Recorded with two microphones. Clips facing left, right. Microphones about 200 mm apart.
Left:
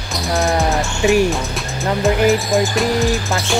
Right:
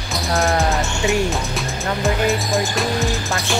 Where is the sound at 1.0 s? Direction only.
25° left (ahead or behind).